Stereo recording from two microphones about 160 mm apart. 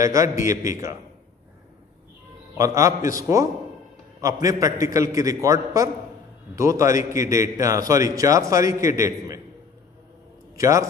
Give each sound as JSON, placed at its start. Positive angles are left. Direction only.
{"t": 0.0, "sound": "a man's voice", "side_deg": -20}
{"t": 2.5, "sound": "a man's voice", "side_deg": -20}
{"t": 10.5, "sound": "a man's voice", "side_deg": -20}